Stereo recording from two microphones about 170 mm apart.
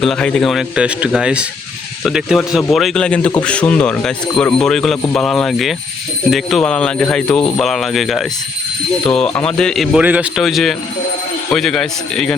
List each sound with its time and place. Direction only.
0.0 s speech: 5° left (ahead or behind)